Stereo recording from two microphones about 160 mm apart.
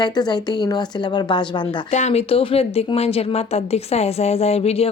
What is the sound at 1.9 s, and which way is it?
A woman's voice, 45° left (ahead or behind).